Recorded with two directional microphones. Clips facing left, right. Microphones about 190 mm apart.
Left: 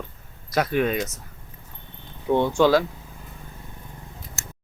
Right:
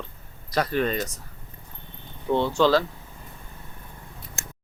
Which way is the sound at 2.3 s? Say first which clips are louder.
Left 2 dB; 15° left (ahead or behind).